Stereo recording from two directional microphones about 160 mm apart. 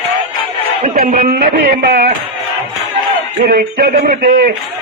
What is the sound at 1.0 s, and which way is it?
Speech, 55° right (ahead or behind).